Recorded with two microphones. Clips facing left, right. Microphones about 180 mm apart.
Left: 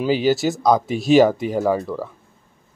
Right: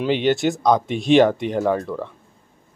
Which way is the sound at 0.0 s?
5° left (ahead or behind).